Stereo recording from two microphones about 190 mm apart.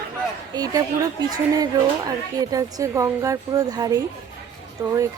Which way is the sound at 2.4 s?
20° right (ahead or behind).